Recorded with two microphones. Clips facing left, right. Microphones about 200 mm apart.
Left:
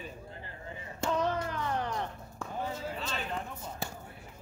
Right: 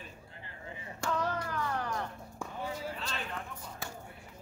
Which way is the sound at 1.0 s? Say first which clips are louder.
Left 3 dB; 20° left (ahead or behind).